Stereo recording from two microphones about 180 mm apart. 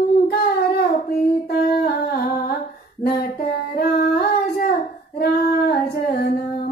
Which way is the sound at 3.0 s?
60° left (ahead or behind).